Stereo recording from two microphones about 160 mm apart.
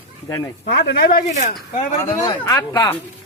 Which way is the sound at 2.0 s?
20° left (ahead or behind).